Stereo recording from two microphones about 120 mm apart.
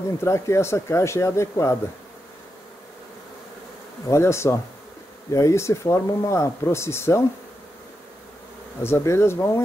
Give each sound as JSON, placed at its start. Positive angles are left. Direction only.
{"t": 0.2, "sound": "speech", "side_deg": 25}
{"t": 4.1, "sound": "speech", "side_deg": 20}
{"t": 8.8, "sound": "speech", "side_deg": 20}